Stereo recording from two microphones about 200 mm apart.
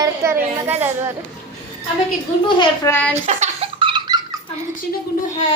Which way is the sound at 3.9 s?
20° right (ahead or behind).